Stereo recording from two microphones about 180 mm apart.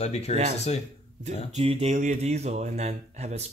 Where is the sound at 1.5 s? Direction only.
35° right (ahead or behind).